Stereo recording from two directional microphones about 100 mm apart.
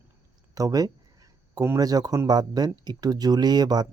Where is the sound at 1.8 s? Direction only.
40° right (ahead or behind).